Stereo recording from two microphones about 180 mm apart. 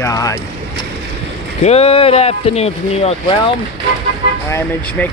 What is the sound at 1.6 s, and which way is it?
Speech, 35° left (ahead or behind).